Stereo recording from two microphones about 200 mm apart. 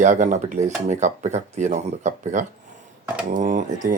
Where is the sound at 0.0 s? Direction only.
40° right (ahead or behind).